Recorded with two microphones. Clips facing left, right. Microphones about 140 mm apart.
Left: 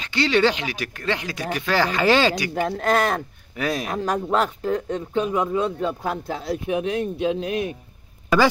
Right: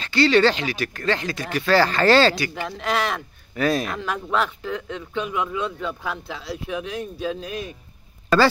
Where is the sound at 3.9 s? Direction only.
40° left (ahead or behind).